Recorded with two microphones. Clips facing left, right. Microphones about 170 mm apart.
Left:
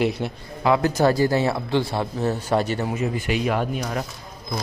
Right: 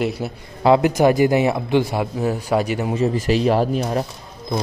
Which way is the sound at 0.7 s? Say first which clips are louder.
Right 4 dB; 20° right (ahead or behind).